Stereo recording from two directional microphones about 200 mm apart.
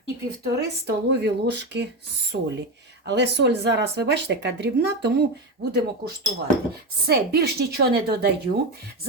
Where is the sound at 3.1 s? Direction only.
60° right (ahead or behind).